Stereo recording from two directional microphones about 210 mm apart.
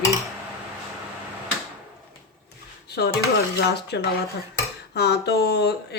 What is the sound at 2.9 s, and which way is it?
Speech, 50° left (ahead or behind).